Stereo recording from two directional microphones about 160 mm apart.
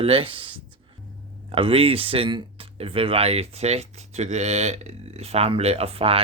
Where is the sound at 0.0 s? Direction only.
35° right (ahead or behind).